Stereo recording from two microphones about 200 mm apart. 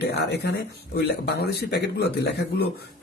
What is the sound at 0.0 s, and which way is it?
Speech, 55° left (ahead or behind).